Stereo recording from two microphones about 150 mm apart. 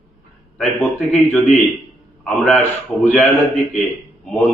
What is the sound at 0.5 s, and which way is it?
Speech, 10° left (ahead or behind).